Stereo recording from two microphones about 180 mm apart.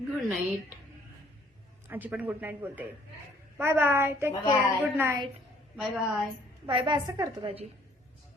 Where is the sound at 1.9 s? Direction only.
10° right (ahead or behind).